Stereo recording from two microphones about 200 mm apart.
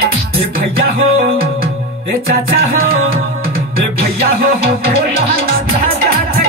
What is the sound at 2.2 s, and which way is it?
Music, 50° right (ahead or behind).